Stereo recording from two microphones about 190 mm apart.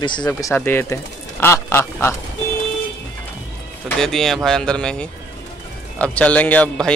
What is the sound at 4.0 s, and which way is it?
Speech, centre (ahead or behind).